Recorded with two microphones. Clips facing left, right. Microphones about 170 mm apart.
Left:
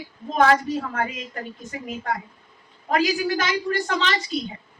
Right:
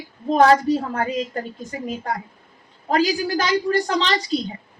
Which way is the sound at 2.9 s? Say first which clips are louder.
Right 2 dB; 35° right (ahead or behind).